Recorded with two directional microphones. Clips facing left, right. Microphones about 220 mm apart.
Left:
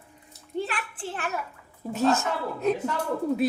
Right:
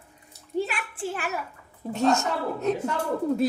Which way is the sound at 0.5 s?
5° right (ahead or behind).